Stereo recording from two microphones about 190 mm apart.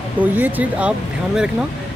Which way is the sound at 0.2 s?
10° right (ahead or behind).